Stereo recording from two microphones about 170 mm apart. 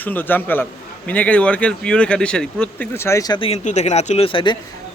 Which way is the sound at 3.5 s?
40° left (ahead or behind).